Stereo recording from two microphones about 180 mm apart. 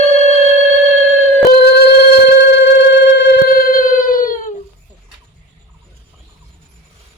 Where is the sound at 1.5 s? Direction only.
60° left (ahead or behind).